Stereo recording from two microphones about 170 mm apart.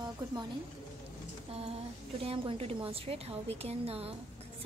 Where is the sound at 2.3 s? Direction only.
35° right (ahead or behind).